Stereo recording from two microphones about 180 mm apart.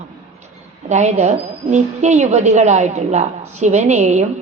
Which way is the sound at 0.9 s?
40° right (ahead or behind).